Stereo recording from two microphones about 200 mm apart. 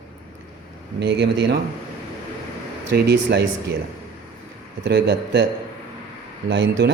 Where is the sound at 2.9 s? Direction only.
55° right (ahead or behind).